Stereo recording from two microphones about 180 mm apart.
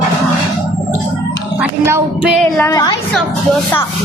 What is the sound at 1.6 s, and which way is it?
Child singing, 10° right (ahead or behind).